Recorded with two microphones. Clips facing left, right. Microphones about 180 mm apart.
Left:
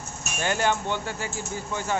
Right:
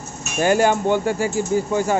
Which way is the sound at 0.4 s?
10° right (ahead or behind).